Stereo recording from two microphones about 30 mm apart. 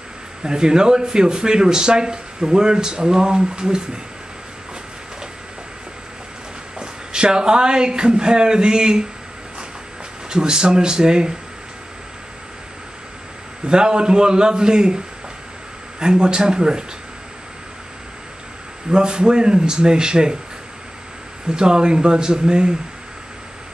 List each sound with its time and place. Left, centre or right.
0.4 s speech: right
6.8 s speech: right
10.3 s speech: right
13.7 s speech: right
16.0 s speech: right
18.9 s speech: right
21.5 s speech: right